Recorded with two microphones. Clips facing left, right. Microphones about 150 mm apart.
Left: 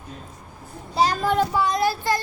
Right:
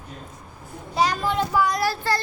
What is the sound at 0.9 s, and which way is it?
Speech, 35° left (ahead or behind).